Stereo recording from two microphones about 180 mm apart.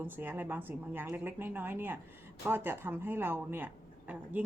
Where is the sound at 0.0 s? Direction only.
10° right (ahead or behind).